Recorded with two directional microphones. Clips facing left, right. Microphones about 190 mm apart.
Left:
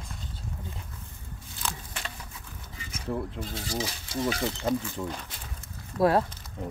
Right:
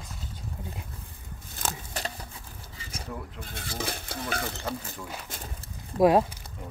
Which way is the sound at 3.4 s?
55° right (ahead or behind).